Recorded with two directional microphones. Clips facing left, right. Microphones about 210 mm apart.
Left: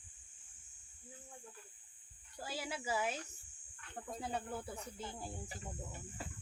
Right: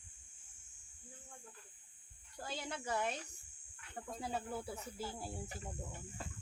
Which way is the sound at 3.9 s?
Centre (ahead or behind).